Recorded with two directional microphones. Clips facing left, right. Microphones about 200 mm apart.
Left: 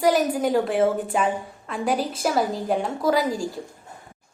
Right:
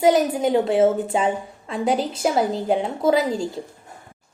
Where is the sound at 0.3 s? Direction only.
25° right (ahead or behind).